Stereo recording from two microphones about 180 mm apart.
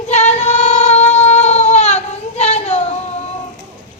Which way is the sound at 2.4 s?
35° left (ahead or behind).